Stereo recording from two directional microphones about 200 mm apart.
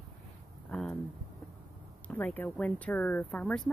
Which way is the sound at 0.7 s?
5° left (ahead or behind).